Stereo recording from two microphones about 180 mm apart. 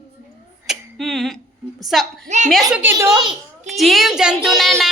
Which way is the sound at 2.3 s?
40° right (ahead or behind).